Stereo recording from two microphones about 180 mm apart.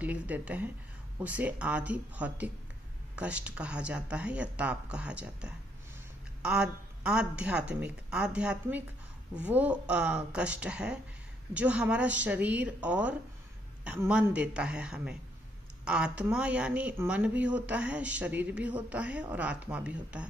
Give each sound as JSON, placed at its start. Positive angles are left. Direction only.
{"t": 0.0, "sound": "speech", "side_deg": -10}